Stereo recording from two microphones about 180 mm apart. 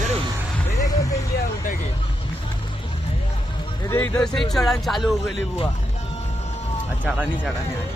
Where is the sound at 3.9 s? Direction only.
15° left (ahead or behind).